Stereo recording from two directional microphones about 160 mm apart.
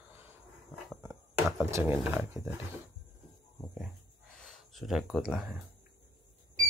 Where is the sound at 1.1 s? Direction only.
5° right (ahead or behind).